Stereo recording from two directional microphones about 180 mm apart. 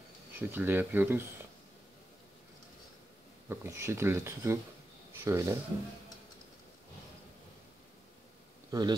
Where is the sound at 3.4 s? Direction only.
15° right (ahead or behind).